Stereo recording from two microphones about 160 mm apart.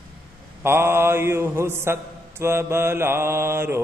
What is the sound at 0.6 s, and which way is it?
Mantra, 15° right (ahead or behind).